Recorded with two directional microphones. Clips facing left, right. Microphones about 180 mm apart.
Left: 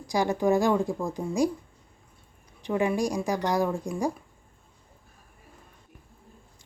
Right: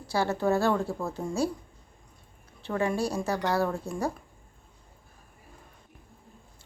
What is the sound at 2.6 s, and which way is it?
Speech, 15° left (ahead or behind).